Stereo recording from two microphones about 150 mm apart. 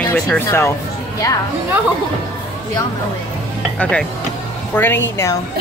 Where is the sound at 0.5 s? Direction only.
15° left (ahead or behind).